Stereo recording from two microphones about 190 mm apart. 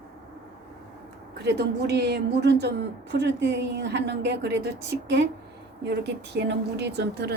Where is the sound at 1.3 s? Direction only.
60° right (ahead or behind).